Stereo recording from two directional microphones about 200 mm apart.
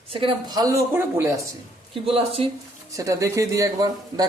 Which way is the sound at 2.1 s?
30° right (ahead or behind).